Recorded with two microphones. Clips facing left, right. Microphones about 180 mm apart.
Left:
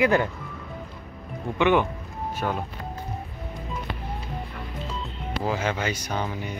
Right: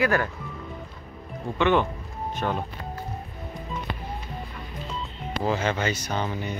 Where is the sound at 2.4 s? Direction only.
Centre (ahead or behind).